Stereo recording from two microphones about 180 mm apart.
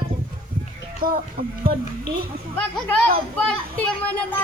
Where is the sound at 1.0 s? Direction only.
55° right (ahead or behind).